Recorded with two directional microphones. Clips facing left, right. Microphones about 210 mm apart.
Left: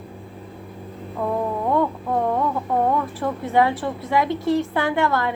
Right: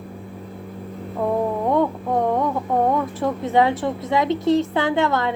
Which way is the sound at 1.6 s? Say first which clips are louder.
Right 2 dB; 15° right (ahead or behind).